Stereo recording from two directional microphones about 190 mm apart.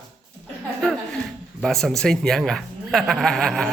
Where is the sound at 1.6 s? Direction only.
Centre (ahead or behind).